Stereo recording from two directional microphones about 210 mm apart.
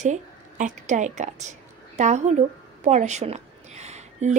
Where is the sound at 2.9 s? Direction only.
35° right (ahead or behind).